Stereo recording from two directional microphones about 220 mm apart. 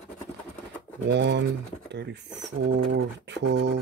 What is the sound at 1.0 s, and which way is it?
Speech, 55° right (ahead or behind).